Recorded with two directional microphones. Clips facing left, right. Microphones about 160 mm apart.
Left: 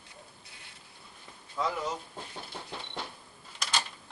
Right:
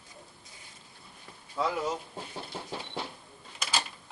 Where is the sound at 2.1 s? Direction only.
10° right (ahead or behind).